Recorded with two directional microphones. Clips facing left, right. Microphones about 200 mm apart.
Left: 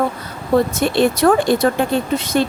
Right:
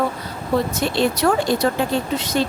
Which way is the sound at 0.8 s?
55° left (ahead or behind).